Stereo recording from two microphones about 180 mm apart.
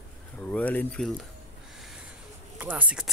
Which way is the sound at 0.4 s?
10° left (ahead or behind).